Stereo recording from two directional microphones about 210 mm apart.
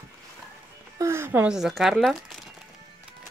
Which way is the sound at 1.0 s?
10° right (ahead or behind).